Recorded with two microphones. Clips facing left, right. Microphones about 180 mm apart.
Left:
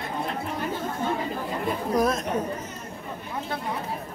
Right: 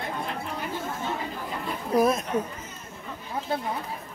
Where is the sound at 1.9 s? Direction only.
5° right (ahead or behind).